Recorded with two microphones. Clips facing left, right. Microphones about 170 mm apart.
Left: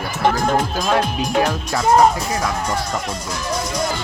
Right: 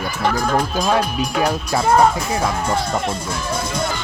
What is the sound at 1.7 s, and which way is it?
Speech, 25° right (ahead or behind).